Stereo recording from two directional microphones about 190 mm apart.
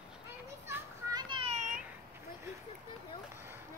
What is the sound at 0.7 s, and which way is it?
Children playing, 15° right (ahead or behind).